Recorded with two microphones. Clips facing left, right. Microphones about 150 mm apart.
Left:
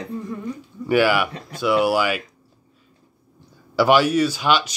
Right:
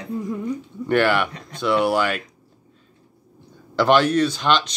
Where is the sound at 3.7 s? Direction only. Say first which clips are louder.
Even; 10° left (ahead or behind).